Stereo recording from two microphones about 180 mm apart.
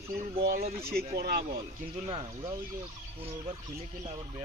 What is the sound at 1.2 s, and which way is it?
Speech, 60° right (ahead or behind).